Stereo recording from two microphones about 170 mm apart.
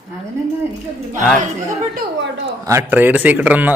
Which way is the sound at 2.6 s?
15° right (ahead or behind).